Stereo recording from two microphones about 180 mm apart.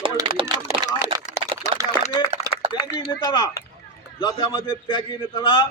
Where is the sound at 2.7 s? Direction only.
25° left (ahead or behind).